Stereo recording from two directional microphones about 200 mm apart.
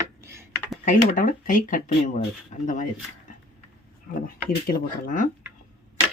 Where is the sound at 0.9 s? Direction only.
40° left (ahead or behind).